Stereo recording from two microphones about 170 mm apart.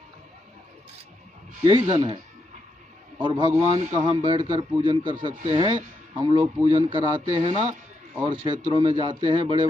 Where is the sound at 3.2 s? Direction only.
30° right (ahead or behind).